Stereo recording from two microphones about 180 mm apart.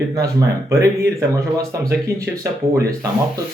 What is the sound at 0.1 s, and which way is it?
Speech, 20° right (ahead or behind).